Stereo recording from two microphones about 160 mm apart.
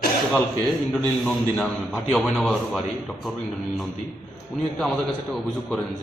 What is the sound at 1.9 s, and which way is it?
Speech, centre (ahead or behind).